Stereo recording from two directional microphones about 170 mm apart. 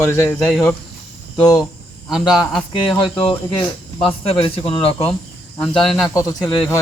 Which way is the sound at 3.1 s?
30° left (ahead or behind).